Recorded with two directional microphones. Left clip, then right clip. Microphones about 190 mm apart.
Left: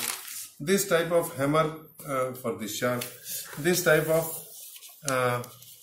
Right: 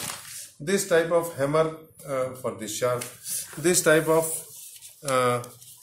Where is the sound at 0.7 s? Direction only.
15° right (ahead or behind).